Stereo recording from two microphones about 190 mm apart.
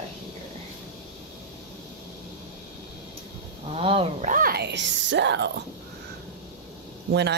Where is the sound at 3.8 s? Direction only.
30° right (ahead or behind).